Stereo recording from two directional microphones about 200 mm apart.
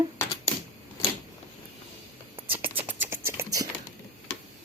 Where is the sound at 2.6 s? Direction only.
10° right (ahead or behind).